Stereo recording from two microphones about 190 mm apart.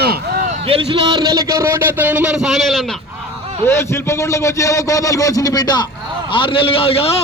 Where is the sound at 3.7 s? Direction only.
15° left (ahead or behind).